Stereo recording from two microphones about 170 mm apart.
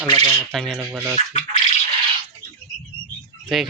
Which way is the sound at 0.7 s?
10° right (ahead or behind).